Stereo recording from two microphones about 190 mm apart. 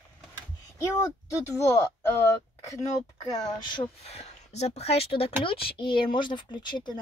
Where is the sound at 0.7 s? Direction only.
15° left (ahead or behind).